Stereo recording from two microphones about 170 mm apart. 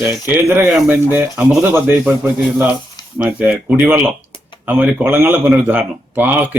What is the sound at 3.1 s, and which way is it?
Speech, 10° right (ahead or behind).